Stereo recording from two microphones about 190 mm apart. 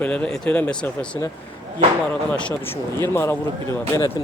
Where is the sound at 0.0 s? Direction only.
5° left (ahead or behind).